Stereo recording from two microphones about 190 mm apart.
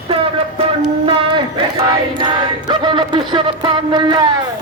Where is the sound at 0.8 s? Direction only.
25° right (ahead or behind).